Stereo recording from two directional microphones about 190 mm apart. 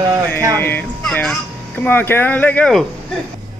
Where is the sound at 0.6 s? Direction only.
10° left (ahead or behind).